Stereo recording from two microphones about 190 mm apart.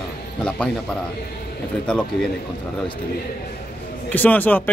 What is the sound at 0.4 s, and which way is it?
Speech, 5° left (ahead or behind).